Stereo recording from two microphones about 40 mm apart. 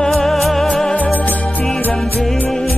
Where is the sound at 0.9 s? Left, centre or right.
Left.